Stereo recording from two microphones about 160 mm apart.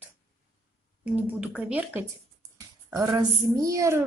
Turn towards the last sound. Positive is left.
turn(degrees=-20)  # may be behind; listen again after turning